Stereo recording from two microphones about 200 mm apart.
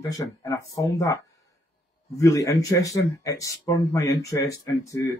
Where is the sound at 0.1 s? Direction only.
15° left (ahead or behind).